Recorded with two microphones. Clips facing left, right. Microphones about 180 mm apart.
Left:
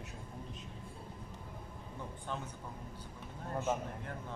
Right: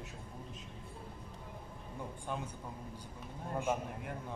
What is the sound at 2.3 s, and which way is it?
Speech, 10° right (ahead or behind).